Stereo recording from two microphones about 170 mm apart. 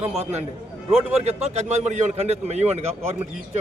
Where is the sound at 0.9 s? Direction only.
40° right (ahead or behind).